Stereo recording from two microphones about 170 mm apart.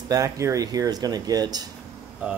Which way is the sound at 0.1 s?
20° right (ahead or behind).